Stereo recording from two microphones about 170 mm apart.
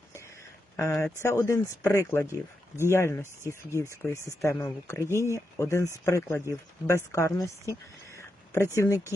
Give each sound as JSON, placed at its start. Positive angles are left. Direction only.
{"t": 0.8, "sound": "speech", "side_deg": 15}